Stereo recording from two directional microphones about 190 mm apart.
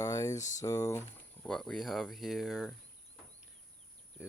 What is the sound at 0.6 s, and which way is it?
Speech, 15° left (ahead or behind).